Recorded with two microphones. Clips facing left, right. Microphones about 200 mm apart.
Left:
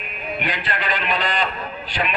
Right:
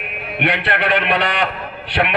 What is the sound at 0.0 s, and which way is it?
A man's voice, 70° right (ahead or behind).